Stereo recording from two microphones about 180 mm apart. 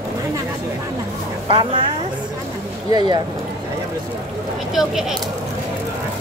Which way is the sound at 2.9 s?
25° right (ahead or behind).